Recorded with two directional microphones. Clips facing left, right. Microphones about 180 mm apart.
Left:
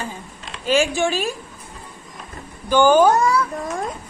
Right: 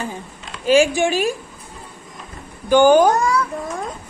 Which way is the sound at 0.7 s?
15° right (ahead or behind).